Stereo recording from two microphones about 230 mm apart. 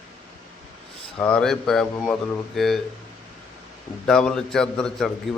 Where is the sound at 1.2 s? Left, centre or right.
Centre.